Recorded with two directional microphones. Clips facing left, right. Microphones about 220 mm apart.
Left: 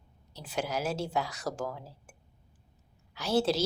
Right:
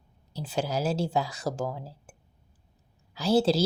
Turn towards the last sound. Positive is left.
turn(degrees=-30)  # may be behind; listen again after turning